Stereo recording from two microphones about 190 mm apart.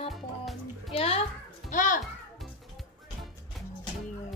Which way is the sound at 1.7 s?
45° left (ahead or behind).